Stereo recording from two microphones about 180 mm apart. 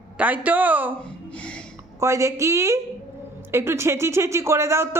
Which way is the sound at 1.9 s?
15° right (ahead or behind).